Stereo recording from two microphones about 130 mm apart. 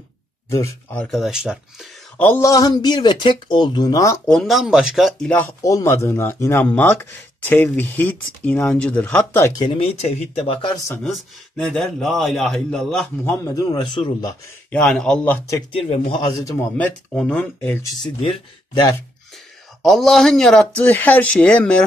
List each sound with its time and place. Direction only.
0.9 s a man's voice: 5° left (ahead or behind)
2.1 s speech: 15° left (ahead or behind)
4.3 s a man's voice: centre (ahead or behind)
5.6 s speech: 25° left (ahead or behind)
9.6 s speech: 40° left (ahead or behind)
11.5 s a man's voice: 5° left (ahead or behind)
13.2 s speech: 20° left (ahead or behind); by 14.3 s 35° left (ahead or behind)
14.7 s speech: 5° left (ahead or behind)
15.7 s speech: 45° left (ahead or behind)
16.2 s speech: 30° left (ahead or behind)
16.7 s speech: 10° left (ahead or behind)
19.8 s speech: centre (ahead or behind)